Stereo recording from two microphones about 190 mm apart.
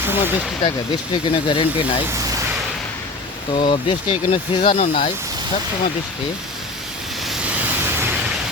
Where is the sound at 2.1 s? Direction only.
15° right (ahead or behind).